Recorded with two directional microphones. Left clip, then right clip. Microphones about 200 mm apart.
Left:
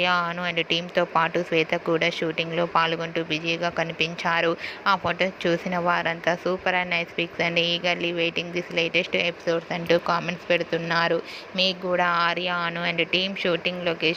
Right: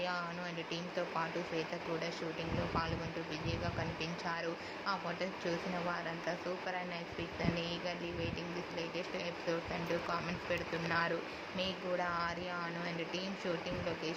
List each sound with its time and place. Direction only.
0.0 s speech: 35° left (ahead or behind)